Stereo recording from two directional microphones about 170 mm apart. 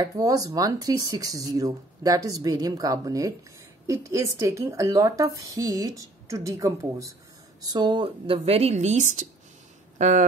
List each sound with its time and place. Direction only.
0.0 s a woman's voice: 20° right (ahead or behind); by 10.2 s 45° right (ahead or behind)